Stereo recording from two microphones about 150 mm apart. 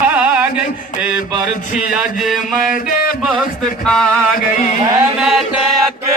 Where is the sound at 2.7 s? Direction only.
65° left (ahead or behind).